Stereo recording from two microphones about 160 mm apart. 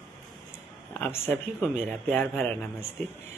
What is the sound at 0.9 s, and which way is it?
Speech, 15° left (ahead or behind).